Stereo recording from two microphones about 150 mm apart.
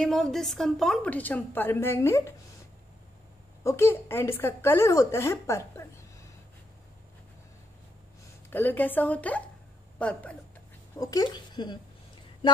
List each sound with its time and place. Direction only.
0.0 s a woman's voice: centre (ahead or behind); by 2.3 s 15° left (ahead or behind)
3.6 s a woman's voice: 15° left (ahead or behind)
8.5 s a woman's voice: 15° left (ahead or behind)
11.0 s speech: 25° left (ahead or behind)